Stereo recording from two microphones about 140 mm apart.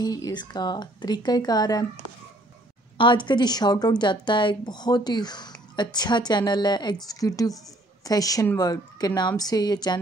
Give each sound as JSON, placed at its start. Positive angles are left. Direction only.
{"t": 0.0, "sound": "speech", "side_deg": 25}
{"t": 3.0, "sound": "a woman's voice", "side_deg": 35}